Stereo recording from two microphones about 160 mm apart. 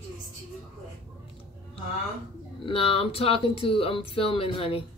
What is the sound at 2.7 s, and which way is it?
Speech, 35° left (ahead or behind).